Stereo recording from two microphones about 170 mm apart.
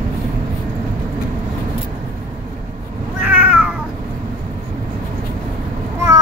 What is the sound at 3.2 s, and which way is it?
Cat, 10° right (ahead or behind).